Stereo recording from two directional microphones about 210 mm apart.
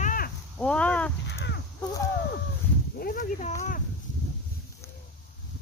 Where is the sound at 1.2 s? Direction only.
55° left (ahead or behind).